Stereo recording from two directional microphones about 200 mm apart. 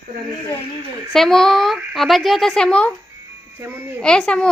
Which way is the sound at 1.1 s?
Centre (ahead or behind).